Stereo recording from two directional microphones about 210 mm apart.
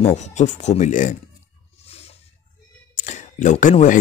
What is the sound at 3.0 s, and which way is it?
Speech, 35° left (ahead or behind).